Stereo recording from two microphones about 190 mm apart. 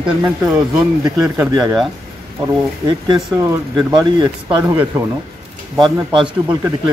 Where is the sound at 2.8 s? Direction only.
25° right (ahead or behind).